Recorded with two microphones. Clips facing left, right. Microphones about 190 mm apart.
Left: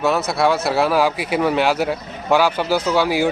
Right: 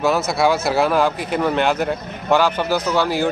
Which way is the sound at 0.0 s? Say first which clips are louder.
Even; centre (ahead or behind).